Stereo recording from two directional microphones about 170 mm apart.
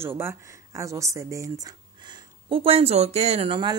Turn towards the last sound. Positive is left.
turn(degrees=-25)  # may be behind; listen again after turning